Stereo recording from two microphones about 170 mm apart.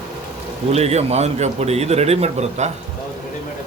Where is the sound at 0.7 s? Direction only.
40° right (ahead or behind).